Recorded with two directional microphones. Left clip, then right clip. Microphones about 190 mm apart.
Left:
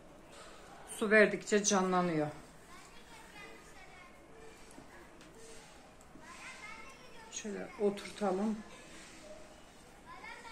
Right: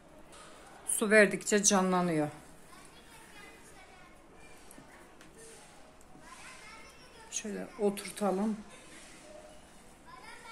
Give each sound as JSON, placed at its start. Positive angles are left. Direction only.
{"t": 0.9, "sound": "speech", "side_deg": -50}
{"t": 7.2, "sound": "speech", "side_deg": -50}